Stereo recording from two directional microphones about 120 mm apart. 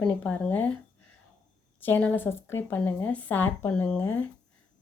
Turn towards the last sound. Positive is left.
turn(degrees=15)  # may be behind; listen again after turning